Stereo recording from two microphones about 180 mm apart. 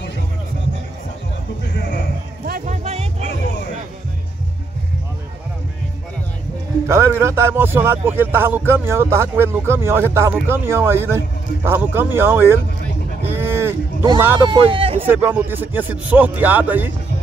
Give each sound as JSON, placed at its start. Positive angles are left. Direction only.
{"t": 2.4, "sound": "music", "side_deg": -50}
{"t": 6.9, "sound": "speech", "side_deg": -15}
{"t": 13.3, "sound": "a sound", "side_deg": -15}
{"t": 14.4, "sound": "speech", "side_deg": -25}
{"t": 15.0, "sound": "speech", "side_deg": -10}